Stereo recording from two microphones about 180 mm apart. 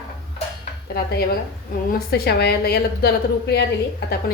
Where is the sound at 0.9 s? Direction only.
60° left (ahead or behind).